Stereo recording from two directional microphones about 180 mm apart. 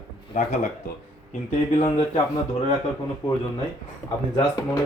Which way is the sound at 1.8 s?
30° left (ahead or behind).